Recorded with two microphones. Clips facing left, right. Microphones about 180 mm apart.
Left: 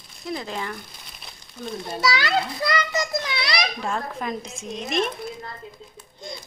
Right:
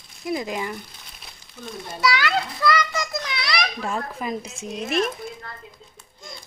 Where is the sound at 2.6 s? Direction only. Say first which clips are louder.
Right 2 dB; 25° left (ahead or behind).